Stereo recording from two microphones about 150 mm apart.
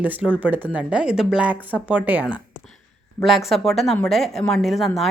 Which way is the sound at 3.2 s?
Centre (ahead or behind).